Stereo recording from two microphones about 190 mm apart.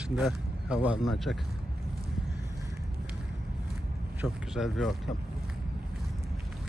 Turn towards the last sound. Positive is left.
turn(degrees=0)  # may be behind; listen again after turning